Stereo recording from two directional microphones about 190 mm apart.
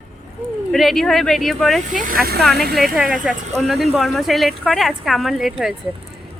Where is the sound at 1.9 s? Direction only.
45° right (ahead or behind).